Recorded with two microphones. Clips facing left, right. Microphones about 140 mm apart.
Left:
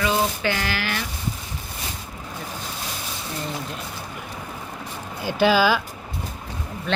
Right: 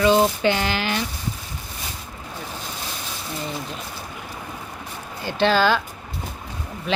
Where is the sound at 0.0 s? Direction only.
25° right (ahead or behind).